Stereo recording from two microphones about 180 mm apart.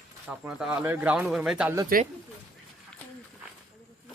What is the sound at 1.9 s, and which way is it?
Speech, 55° right (ahead or behind).